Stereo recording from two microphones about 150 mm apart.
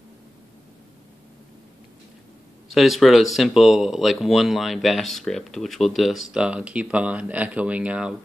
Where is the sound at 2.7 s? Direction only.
Centre (ahead or behind).